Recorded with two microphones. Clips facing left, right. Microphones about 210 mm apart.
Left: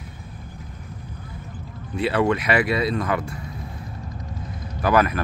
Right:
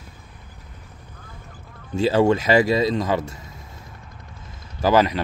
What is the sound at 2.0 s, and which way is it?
Speech, 30° right (ahead or behind).